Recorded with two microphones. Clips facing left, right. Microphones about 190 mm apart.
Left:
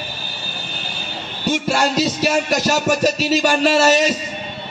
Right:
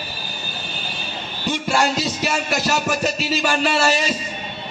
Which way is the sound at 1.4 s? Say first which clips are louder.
Left 2 dB; 40° left (ahead or behind).